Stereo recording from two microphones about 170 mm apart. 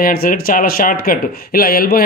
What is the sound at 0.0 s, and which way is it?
Speech, 60° left (ahead or behind).